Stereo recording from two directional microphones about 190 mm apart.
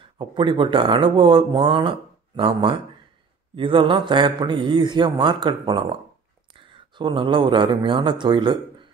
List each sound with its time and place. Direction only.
0.0 s speech: 25° right (ahead or behind)